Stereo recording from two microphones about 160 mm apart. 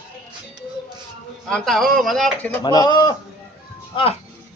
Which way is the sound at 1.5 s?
5° left (ahead or behind).